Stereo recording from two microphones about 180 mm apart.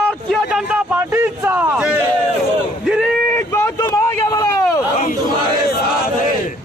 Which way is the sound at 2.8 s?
Centre (ahead or behind).